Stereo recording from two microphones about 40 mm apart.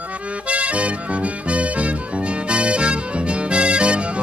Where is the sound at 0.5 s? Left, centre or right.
Right.